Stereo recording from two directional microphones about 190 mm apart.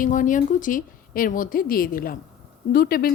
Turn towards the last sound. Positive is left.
turn(degrees=50)  # may be behind; listen again after turning